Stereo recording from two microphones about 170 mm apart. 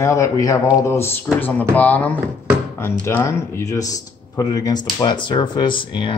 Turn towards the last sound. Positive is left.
turn(degrees=30)  # may be behind; listen again after turning